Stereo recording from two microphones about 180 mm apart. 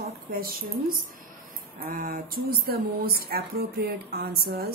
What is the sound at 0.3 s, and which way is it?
Speech, 55° right (ahead or behind).